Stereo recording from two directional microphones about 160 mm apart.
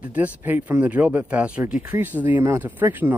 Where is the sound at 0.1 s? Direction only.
10° right (ahead or behind).